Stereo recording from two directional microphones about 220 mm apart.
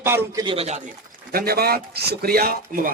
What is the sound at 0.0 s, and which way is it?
Speech, 10° right (ahead or behind).